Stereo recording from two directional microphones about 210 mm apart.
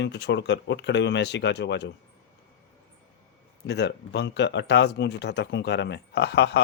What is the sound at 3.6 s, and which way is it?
Speech, 55° left (ahead or behind).